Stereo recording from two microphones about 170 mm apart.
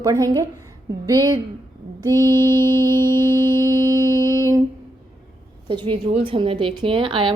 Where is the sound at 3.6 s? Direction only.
20° right (ahead or behind).